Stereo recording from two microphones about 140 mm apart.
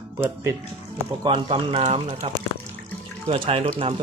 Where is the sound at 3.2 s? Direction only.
40° right (ahead or behind).